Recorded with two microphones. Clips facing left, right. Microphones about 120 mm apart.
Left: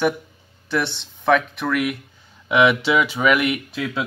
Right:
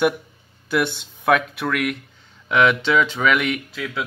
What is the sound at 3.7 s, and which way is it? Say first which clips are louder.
Speech: left 3 dB; 25° left (ahead or behind).